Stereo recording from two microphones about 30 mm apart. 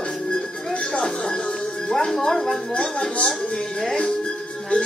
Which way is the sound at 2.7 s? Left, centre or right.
Left.